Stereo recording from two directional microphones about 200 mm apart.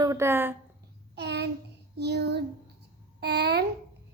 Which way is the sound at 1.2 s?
55° right (ahead or behind).